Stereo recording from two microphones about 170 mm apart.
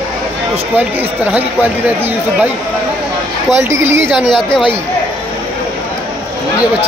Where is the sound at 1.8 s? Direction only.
10° right (ahead or behind).